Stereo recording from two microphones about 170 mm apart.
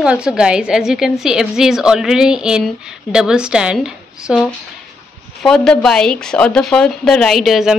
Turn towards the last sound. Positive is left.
turn(degrees=0)  # may be behind; listen again after turning